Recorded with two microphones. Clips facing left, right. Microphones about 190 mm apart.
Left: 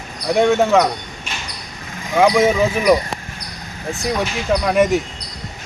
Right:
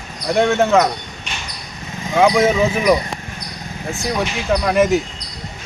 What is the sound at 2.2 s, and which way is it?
Speech, centre (ahead or behind).